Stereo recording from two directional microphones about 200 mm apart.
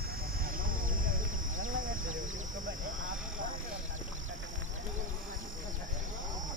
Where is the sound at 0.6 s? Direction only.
45° right (ahead or behind).